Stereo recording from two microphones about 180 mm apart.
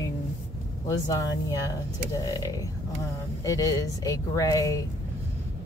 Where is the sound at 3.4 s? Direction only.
20° left (ahead or behind).